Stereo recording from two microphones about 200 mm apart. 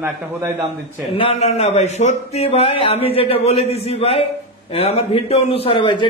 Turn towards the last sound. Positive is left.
turn(degrees=25)  # may be behind; listen again after turning